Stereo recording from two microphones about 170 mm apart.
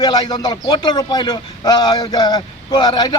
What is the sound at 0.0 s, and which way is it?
Speech, 25° left (ahead or behind).